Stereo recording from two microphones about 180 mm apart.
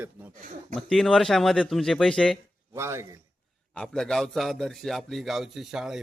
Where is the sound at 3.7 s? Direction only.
5° left (ahead or behind).